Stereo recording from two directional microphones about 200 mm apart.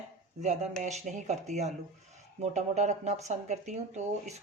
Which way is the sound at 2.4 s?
35° right (ahead or behind).